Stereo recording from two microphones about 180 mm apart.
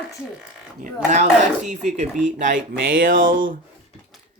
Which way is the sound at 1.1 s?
40° right (ahead or behind).